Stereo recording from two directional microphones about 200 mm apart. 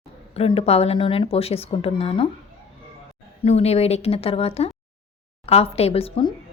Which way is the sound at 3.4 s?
30° left (ahead or behind).